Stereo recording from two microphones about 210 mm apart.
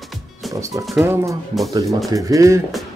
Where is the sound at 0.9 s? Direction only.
5° right (ahead or behind).